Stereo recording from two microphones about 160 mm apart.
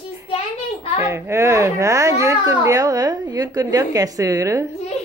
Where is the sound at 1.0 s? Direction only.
20° right (ahead or behind).